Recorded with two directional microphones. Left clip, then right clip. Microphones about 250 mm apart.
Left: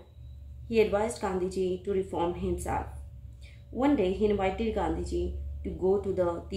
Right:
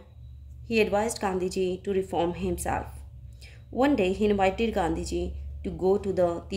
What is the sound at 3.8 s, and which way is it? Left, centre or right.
Speech, right.